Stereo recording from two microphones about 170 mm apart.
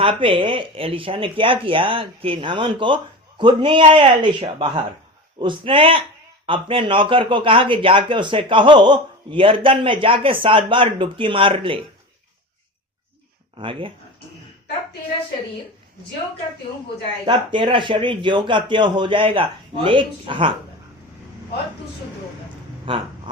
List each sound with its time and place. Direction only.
0.0 s a man's voice: 30° right (ahead or behind)
13.6 s a man's voice: 30° right (ahead or behind)
17.2 s a man's voice: 30° right (ahead or behind)
22.9 s speech: 30° right (ahead or behind)